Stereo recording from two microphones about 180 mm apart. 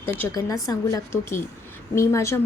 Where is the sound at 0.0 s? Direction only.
10° left (ahead or behind).